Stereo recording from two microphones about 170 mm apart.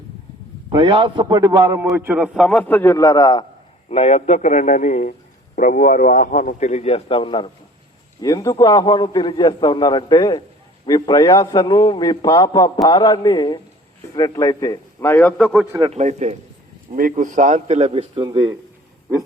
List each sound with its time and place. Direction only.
0.7 s a man's voice: 30° right (ahead or behind); by 3.4 s 20° left (ahead or behind)
3.8 s a man's voice: 40° left (ahead or behind); by 15.6 s 5° left (ahead or behind)
15.9 s a man's voice: 40° right (ahead or behind); by 18.5 s 25° right (ahead or behind)